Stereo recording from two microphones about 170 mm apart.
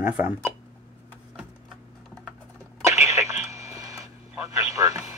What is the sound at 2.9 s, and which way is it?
Radio, 15° right (ahead or behind).